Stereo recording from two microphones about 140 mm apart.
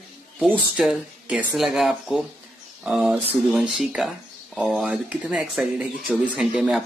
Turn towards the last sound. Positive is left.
turn(degrees=-5)  # may be behind; listen again after turning